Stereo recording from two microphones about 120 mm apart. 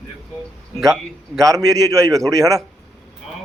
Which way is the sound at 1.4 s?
30° right (ahead or behind).